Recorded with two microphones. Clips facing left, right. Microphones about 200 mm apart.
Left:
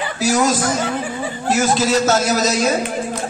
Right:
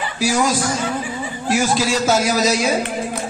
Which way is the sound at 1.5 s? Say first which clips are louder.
Left 2 dB; 10° right (ahead or behind).